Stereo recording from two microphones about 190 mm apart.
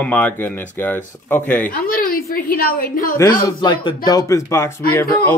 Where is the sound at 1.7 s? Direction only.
45° left (ahead or behind).